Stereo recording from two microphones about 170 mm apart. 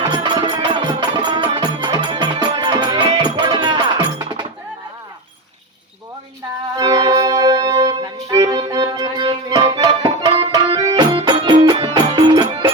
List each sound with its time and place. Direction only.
0.0 s music: 25° right (ahead or behind)
6.7 s music: 20° right (ahead or behind)